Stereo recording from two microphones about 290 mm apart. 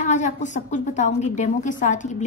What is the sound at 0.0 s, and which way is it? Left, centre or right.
A woman's voice, left.